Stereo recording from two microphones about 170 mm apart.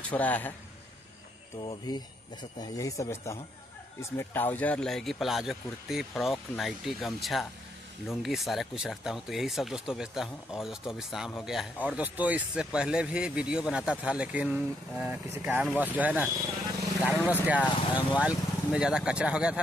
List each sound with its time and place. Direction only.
0.1 s a man's voice: 10° left (ahead or behind)
1.6 s speech: 25° left (ahead or behind); by 19.6 s 5° right (ahead or behind)